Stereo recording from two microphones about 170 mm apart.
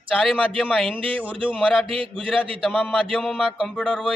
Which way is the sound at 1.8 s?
30° right (ahead or behind).